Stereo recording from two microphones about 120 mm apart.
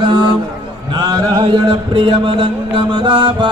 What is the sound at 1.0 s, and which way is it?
Music, 30° right (ahead or behind).